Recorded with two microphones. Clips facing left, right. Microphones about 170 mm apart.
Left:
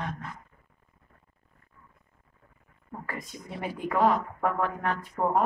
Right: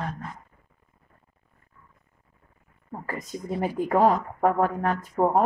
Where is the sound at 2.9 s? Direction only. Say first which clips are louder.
Right 4 dB; 40° right (ahead or behind).